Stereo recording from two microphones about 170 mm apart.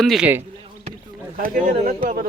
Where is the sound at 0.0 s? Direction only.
Centre (ahead or behind).